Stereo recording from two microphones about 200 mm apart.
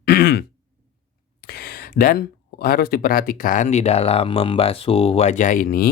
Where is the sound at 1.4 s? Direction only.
50° left (ahead or behind).